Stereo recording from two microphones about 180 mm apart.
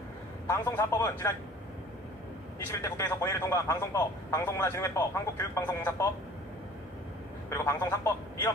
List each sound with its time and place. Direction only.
0.5 s speech: 15° left (ahead or behind)
2.7 s speech: 15° left (ahead or behind)
7.4 s speech: 15° left (ahead or behind)